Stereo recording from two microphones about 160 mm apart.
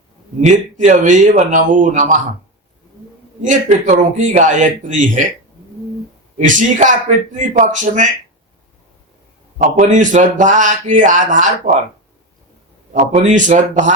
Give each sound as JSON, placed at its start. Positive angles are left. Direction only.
{"t": 0.4, "sound": "a man's voice", "side_deg": -50}
{"t": 3.4, "sound": "a man's voice", "side_deg": -50}
{"t": 6.3, "sound": "a man's voice", "side_deg": -50}
{"t": 9.6, "sound": "a man's voice", "side_deg": -50}
{"t": 12.9, "sound": "a man's voice", "side_deg": -50}